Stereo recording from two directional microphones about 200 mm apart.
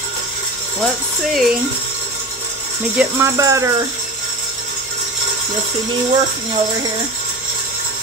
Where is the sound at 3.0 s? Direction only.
15° right (ahead or behind).